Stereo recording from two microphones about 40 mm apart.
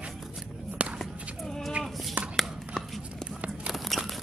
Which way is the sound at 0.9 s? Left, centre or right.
Centre.